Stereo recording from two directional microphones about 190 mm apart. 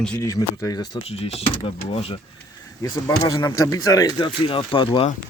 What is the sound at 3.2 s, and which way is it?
Speech, 20° left (ahead or behind).